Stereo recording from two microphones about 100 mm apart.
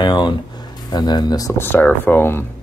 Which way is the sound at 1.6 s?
20° left (ahead or behind).